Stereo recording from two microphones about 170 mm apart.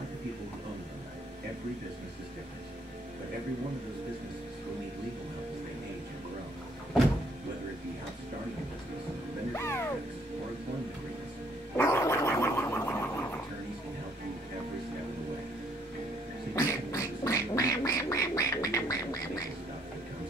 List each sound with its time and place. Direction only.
9.5 s music: 15° left (ahead or behind)
11.7 s dog: 15° left (ahead or behind)
16.5 s quack: 20° left (ahead or behind)